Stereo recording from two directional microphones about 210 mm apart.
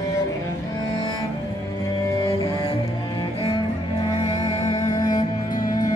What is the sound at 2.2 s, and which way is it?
Music, 15° left (ahead or behind).